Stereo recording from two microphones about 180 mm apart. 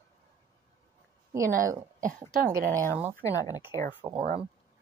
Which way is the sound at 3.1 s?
20° left (ahead or behind).